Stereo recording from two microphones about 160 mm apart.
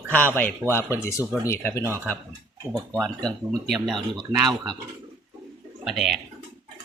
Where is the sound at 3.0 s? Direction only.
5° left (ahead or behind).